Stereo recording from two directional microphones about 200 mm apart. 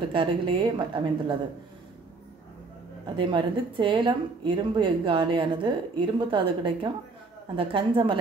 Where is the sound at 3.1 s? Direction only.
25° right (ahead or behind).